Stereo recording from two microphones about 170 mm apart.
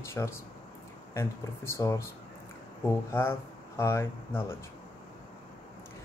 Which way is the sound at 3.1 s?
15° left (ahead or behind).